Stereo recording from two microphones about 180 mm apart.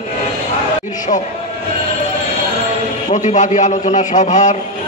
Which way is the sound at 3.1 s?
40° left (ahead or behind).